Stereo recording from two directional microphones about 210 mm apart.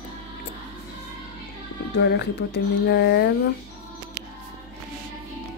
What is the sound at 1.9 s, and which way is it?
Speech, 50° left (ahead or behind).